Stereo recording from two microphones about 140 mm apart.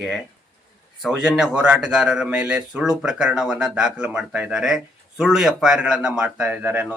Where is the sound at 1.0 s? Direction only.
5° right (ahead or behind).